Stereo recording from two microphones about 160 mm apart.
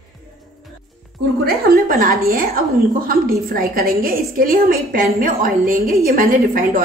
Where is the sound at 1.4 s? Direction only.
70° right (ahead or behind).